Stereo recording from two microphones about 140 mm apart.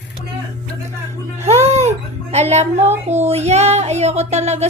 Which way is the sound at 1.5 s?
50° right (ahead or behind).